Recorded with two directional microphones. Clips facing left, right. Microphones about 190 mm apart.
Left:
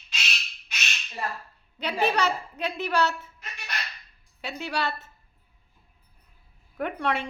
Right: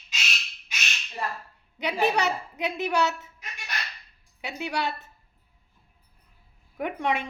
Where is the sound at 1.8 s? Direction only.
15° right (ahead or behind).